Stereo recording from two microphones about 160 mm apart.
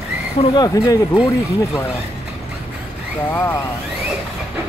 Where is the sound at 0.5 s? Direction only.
25° left (ahead or behind).